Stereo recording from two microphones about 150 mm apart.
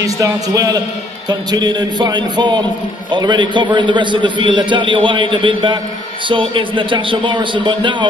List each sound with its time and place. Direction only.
0.0 s a man's voice: 25° right (ahead or behind)